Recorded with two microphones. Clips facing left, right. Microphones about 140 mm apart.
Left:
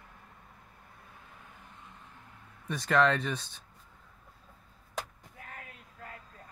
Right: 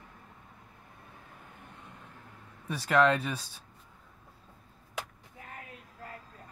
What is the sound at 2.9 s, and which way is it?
Speech, 5° right (ahead or behind).